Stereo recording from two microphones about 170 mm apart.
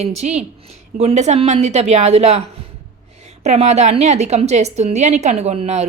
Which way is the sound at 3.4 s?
40° right (ahead or behind).